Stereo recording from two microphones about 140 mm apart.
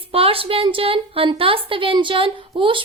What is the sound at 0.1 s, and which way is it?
A woman's voice, 40° right (ahead or behind).